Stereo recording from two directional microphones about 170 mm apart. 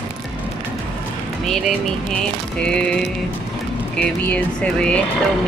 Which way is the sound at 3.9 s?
5° left (ahead or behind).